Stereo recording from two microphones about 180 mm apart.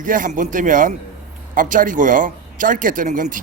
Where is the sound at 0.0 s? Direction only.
50° right (ahead or behind).